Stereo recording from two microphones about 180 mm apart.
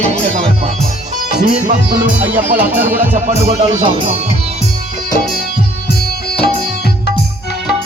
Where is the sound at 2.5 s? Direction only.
10° right (ahead or behind).